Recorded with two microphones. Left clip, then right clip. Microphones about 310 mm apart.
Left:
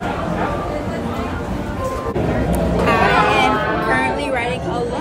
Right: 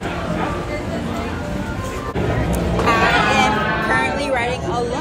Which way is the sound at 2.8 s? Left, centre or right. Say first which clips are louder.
Left 1 dB; centre.